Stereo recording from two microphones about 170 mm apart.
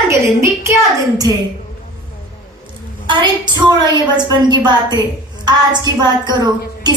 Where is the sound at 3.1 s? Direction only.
25° right (ahead or behind).